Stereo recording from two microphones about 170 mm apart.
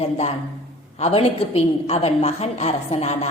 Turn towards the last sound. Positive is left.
turn(degrees=40)  # may be behind; listen again after turning